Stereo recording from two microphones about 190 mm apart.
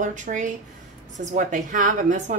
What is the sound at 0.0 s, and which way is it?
A woman's voice, 40° right (ahead or behind).